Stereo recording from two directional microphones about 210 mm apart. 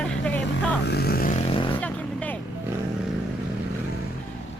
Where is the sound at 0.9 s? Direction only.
50° left (ahead or behind).